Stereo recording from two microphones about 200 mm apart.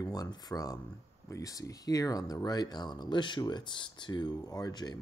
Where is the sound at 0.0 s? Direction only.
20° left (ahead or behind).